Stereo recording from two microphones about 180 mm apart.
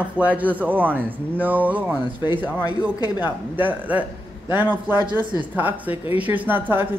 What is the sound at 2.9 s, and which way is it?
Speech, 20° left (ahead or behind).